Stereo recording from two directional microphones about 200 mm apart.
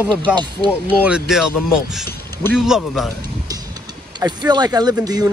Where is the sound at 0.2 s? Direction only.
20° right (ahead or behind).